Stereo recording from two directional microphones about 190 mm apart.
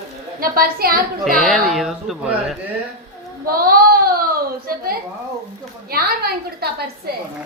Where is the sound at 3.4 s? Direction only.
50° right (ahead or behind).